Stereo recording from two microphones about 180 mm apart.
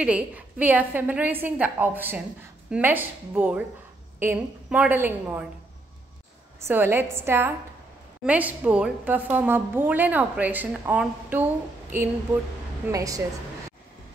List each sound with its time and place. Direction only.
0.0 s a woman's voice: 5° right (ahead or behind)
6.7 s a woman's voice: 10° right (ahead or behind)